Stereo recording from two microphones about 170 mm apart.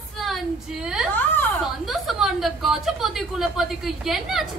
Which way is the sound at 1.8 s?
Centre (ahead or behind).